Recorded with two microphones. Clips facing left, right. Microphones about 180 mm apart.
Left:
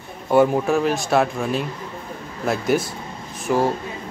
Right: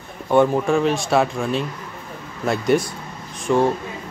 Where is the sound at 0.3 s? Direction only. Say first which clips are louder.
Even; 5° left (ahead or behind).